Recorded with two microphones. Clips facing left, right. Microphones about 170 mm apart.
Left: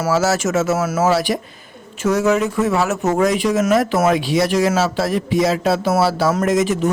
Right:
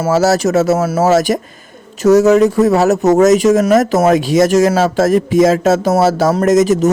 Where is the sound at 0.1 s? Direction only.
40° right (ahead or behind).